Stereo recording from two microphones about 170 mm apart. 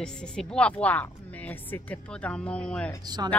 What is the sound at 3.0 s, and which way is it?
Speech, 25° right (ahead or behind).